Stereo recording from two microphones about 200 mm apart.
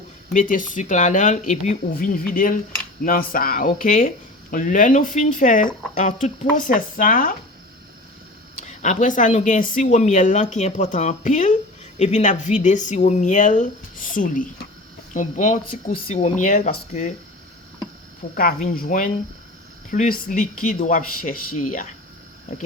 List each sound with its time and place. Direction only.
0.3 s speech: 40° left (ahead or behind)
8.5 s speech: 35° left (ahead or behind)
18.3 s speech: 45° left (ahead or behind)